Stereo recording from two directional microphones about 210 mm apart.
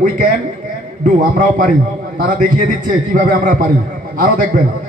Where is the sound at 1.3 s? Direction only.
40° right (ahead or behind).